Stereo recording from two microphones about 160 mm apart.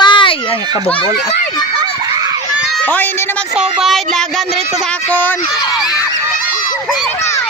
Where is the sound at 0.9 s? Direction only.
35° left (ahead or behind).